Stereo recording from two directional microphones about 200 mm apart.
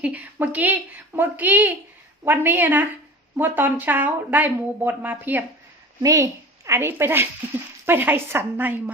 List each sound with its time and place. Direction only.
0.0 s a woman's voice: 10° right (ahead or behind)